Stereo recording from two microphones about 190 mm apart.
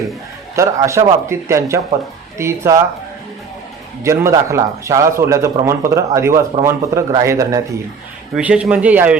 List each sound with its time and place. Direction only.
0.5 s speech: 15° right (ahead or behind)
4.0 s speech: 15° right (ahead or behind)
8.4 s speech: 5° right (ahead or behind)